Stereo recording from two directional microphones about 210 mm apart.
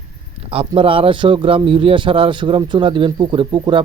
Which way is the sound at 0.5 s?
25° right (ahead or behind).